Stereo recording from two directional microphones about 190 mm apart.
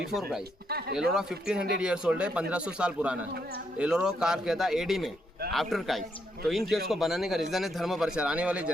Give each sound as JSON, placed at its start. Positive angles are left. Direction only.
{"t": 0.1, "sound": "a man's voice", "side_deg": 0}
{"t": 0.7, "sound": "speech", "side_deg": -55}
{"t": 1.1, "sound": "a man's voice", "side_deg": -5}